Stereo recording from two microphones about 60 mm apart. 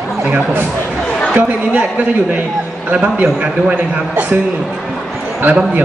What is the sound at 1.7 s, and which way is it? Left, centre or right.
A man's voice, right.